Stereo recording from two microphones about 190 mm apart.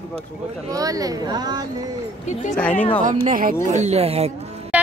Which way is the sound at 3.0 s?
45° right (ahead or behind).